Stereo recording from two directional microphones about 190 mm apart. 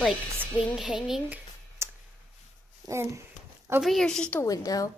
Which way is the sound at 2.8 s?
15° right (ahead or behind).